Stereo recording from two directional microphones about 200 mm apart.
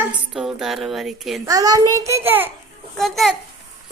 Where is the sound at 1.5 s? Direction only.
20° right (ahead or behind).